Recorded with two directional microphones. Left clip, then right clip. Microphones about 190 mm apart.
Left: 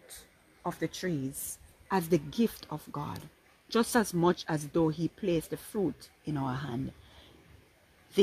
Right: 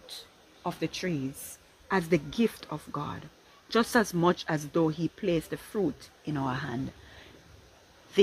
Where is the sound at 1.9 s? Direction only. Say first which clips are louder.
Right 2 dB; 50° left (ahead or behind).